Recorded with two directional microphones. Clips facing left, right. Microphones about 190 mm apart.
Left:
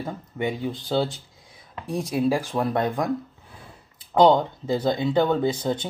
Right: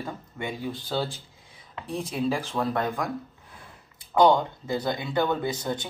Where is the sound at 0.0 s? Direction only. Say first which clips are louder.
Left 6 dB; 20° left (ahead or behind).